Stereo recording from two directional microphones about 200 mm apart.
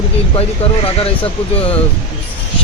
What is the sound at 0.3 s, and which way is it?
Speech, 30° left (ahead or behind).